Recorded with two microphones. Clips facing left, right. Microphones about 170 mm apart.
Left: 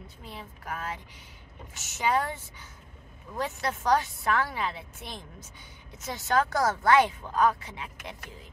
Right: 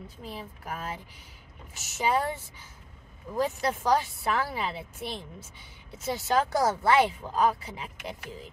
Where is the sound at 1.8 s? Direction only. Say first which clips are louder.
Even; 30° right (ahead or behind).